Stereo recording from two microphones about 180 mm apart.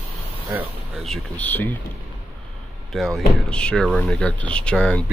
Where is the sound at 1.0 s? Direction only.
5° left (ahead or behind).